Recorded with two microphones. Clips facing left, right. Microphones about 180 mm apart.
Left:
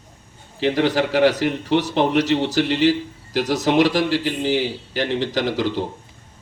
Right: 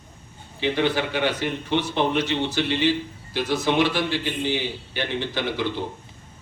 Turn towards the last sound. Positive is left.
turn(degrees=40)  # may be behind; listen again after turning